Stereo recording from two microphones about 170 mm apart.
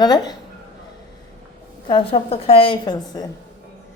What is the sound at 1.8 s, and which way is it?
A woman's voice, 30° left (ahead or behind).